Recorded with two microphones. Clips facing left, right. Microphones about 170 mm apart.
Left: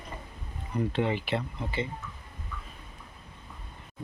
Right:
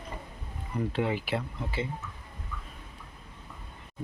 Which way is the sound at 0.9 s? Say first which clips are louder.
Even; 5° right (ahead or behind).